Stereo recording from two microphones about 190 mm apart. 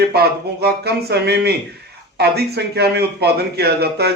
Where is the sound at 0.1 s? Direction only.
55° right (ahead or behind).